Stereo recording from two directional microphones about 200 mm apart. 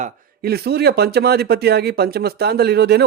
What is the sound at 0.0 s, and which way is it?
Speech, 50° right (ahead or behind).